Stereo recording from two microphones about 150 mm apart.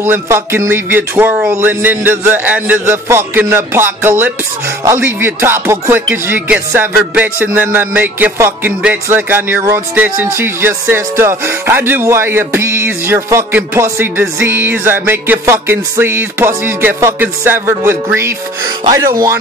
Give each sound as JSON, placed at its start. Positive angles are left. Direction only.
{"t": 0.0, "sound": "music", "side_deg": -15}
{"t": 18.9, "sound": "speech", "side_deg": -20}